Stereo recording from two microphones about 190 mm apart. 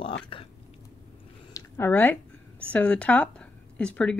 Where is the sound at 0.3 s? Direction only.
30° left (ahead or behind).